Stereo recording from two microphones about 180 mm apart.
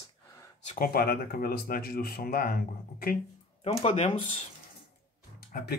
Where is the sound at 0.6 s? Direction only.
50° left (ahead or behind).